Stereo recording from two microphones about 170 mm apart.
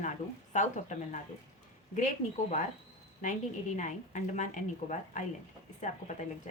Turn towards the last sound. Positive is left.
turn(degrees=45)  # may be behind; listen again after turning